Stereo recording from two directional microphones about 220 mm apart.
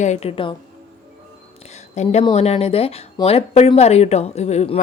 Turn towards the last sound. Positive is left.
turn(degrees=30)  # may be behind; listen again after turning